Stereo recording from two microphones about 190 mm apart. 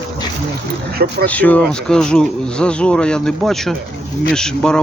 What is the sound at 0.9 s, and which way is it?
Speech, 55° right (ahead or behind).